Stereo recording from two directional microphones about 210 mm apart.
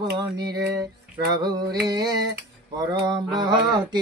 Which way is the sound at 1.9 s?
20° right (ahead or behind).